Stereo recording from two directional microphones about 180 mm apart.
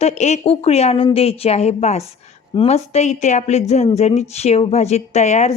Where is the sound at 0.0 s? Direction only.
40° left (ahead or behind).